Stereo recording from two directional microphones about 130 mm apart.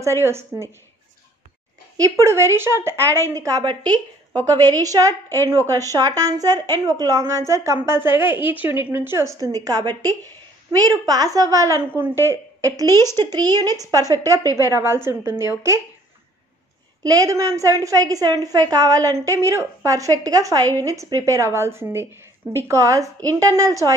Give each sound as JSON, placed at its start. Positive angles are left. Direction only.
{"t": 0.0, "sound": "a woman's voice", "side_deg": -20}
{"t": 2.0, "sound": "a woman's voice", "side_deg": -25}
{"t": 17.0, "sound": "a woman's voice", "side_deg": -25}